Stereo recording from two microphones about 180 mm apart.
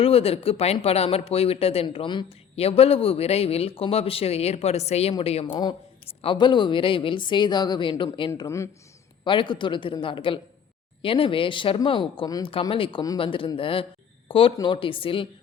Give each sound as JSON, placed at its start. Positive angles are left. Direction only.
{"t": 0.0, "sound": "speech", "side_deg": 35}
{"t": 8.3, "sound": "speech", "side_deg": 15}
{"t": 9.2, "sound": "speech", "side_deg": 25}